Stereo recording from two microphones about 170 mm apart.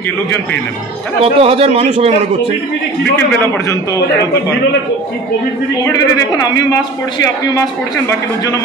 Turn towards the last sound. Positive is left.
turn(degrees=20)  # may be behind; listen again after turning